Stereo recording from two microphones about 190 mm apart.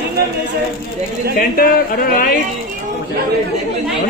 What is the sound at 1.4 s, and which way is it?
Speech, 50° left (ahead or behind).